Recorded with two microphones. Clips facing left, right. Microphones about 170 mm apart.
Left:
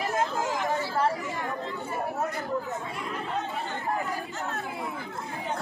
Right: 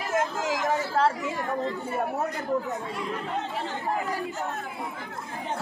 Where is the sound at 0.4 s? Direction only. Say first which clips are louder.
Right 1 dB; 85° right.